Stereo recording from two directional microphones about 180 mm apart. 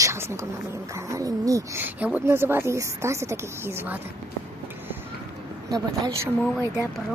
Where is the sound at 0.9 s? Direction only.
15° right (ahead or behind).